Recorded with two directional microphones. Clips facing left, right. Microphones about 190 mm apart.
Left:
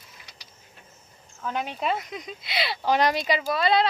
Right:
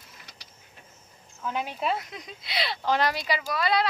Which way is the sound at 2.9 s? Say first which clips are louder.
Left 4 dB; 20° left (ahead or behind).